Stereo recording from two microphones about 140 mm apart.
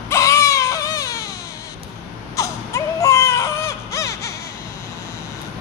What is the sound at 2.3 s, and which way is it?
Baby cry, 25° left (ahead or behind).